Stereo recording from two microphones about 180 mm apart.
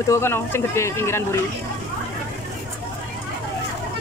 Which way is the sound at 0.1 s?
15° left (ahead or behind).